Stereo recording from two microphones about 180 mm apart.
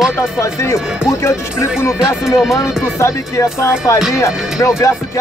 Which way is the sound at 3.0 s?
15° left (ahead or behind).